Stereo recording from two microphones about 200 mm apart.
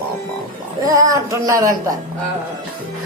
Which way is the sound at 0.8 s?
15° right (ahead or behind).